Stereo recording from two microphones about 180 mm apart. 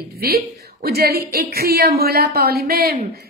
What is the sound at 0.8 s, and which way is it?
A woman's voice, 60° right (ahead or behind).